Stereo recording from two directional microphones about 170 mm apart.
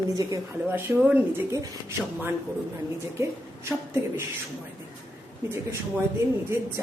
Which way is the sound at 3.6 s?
15° right (ahead or behind).